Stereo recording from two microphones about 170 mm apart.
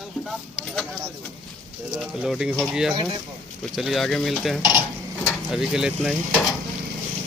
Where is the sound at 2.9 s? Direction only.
30° right (ahead or behind).